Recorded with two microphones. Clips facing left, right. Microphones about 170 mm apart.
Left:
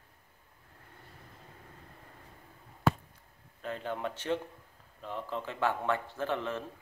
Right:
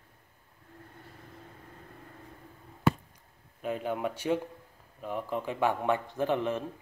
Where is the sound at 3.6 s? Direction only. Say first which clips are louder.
Right 4 dB; 10° right (ahead or behind).